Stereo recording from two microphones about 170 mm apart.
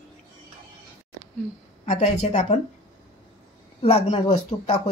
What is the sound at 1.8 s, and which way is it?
Speech, 45° left (ahead or behind).